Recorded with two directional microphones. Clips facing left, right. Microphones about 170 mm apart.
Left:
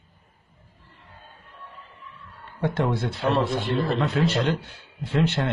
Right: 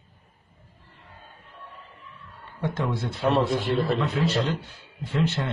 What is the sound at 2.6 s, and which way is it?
Speech, 65° left (ahead or behind).